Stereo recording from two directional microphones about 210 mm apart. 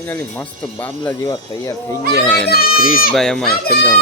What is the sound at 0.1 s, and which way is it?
Speech, 10° left (ahead or behind).